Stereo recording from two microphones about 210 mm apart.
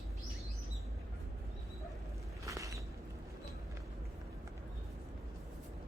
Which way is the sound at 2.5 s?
15° right (ahead or behind).